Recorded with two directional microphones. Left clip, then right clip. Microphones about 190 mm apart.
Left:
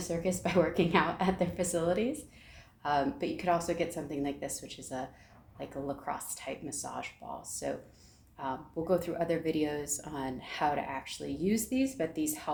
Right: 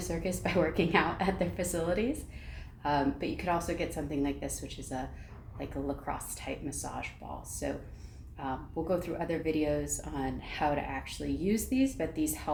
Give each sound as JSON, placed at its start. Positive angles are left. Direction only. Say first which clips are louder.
{"t": 0.1, "sound": "a woman's voice", "louder": "left 2 dB", "side_deg": 25}
{"t": 6.1, "sound": "a woman's voice", "louder": "even", "side_deg": 30}